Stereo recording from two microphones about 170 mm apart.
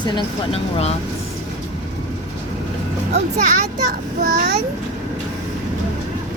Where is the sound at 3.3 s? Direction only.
45° right (ahead or behind).